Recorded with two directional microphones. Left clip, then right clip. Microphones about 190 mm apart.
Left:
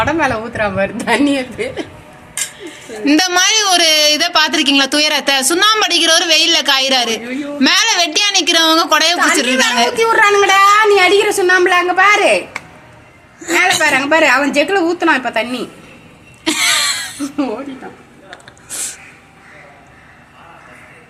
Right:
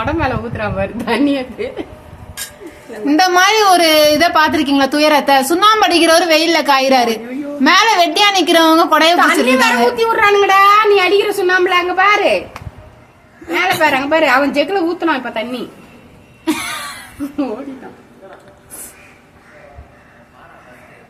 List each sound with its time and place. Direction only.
0.0 s a woman's voice: 10° left (ahead or behind)
3.0 s a woman's voice: 10° left (ahead or behind)
13.5 s a woman's voice: 15° left (ahead or behind)
16.4 s a sound: 20° left (ahead or behind)